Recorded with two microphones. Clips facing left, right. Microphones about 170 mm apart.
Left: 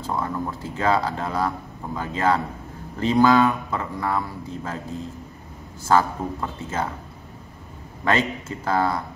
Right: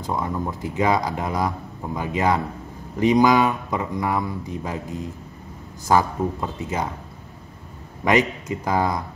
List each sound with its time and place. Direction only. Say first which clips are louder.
0.0 s speech: right 1 dB; 15° right (ahead or behind)
8.0 s speech: right 3 dB; 15° right (ahead or behind)